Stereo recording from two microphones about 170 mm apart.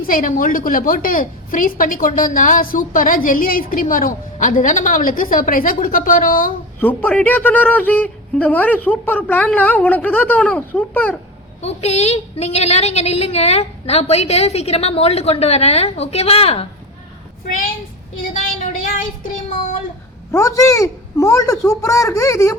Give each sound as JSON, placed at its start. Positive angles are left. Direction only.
{"t": 0.0, "sound": "a woman's voice", "side_deg": 55}
{"t": 6.7, "sound": "a man's voice", "side_deg": 10}
{"t": 11.6, "sound": "a woman's voice", "side_deg": 40}
{"t": 18.2, "sound": "child singing", "side_deg": 50}
{"t": 20.3, "sound": "speech", "side_deg": 20}